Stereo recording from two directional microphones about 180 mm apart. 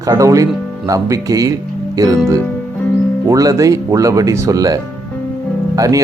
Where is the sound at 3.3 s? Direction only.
20° right (ahead or behind).